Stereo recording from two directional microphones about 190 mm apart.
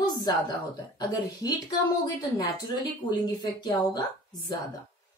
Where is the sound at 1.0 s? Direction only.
20° left (ahead or behind).